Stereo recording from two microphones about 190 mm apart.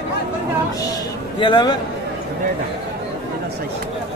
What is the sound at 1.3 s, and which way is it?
Speech, 25° left (ahead or behind).